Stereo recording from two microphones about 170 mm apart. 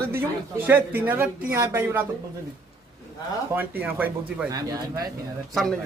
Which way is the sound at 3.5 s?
10° right (ahead or behind).